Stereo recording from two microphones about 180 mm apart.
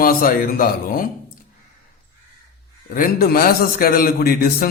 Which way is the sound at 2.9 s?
55° left (ahead or behind).